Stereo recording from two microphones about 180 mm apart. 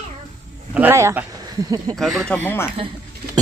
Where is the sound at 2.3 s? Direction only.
10° left (ahead or behind).